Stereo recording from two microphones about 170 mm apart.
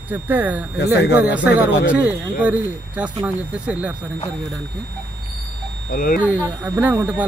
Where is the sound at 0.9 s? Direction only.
80° left.